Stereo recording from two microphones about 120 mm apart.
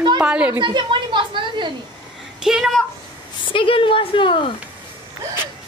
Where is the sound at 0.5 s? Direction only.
40° right (ahead or behind).